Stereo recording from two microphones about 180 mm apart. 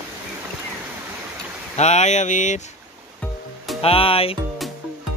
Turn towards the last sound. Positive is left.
turn(degrees=30)  # may be behind; listen again after turning